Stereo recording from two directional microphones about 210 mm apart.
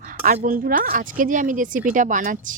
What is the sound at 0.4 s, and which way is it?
Speech, 40° right (ahead or behind).